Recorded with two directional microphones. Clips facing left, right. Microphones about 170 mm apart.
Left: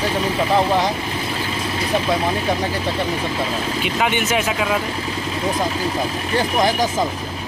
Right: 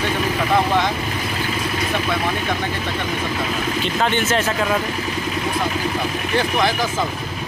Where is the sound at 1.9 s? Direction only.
30° left (ahead or behind).